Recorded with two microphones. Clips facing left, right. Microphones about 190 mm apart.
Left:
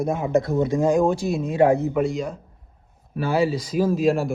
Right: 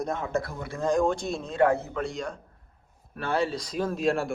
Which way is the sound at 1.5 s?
15° left (ahead or behind).